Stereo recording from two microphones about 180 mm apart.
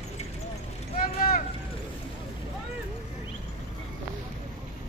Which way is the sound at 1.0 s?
50° left (ahead or behind).